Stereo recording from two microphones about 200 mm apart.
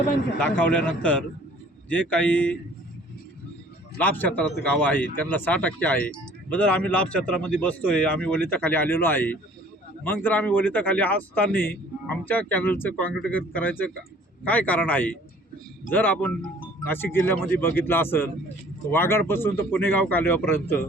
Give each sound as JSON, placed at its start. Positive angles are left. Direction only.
{"t": 0.3, "sound": "speech", "side_deg": 5}
{"t": 4.0, "sound": "speech", "side_deg": 10}